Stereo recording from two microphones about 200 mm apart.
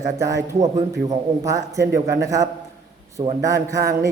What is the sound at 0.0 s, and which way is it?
A man's voice, 15° right (ahead or behind).